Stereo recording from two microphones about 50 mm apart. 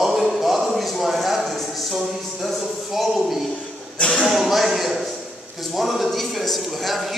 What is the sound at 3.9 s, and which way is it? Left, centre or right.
Speech, left.